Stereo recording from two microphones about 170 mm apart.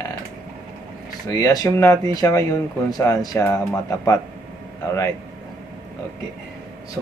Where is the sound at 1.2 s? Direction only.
20° left (ahead or behind).